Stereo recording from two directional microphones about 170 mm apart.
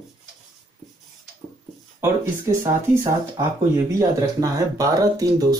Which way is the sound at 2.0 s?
15° right (ahead or behind).